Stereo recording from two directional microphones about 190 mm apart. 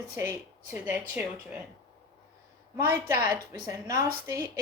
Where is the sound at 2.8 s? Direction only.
15° right (ahead or behind).